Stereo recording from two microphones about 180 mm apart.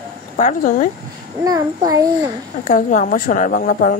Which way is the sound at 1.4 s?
20° right (ahead or behind).